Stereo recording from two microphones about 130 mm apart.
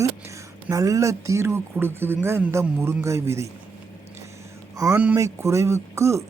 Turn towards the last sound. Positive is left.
turn(degrees=-20)  # may be behind; listen again after turning